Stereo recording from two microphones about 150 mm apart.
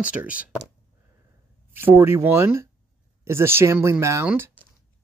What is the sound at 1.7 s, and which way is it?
Speech, 15° right (ahead or behind).